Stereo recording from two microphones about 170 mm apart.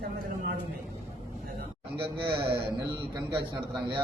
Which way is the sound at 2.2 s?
30° right (ahead or behind).